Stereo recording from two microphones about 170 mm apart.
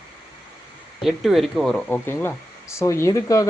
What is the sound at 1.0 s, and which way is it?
Speech, centre (ahead or behind).